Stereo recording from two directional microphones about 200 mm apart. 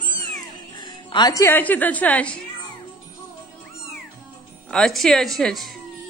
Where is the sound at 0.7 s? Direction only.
20° left (ahead or behind).